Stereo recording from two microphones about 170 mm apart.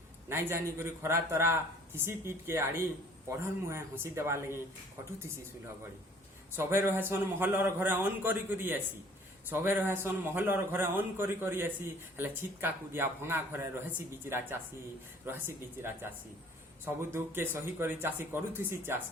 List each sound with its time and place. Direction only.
0.3 s a man's voice: 15° right (ahead or behind)
6.6 s a man's voice: 15° right (ahead or behind)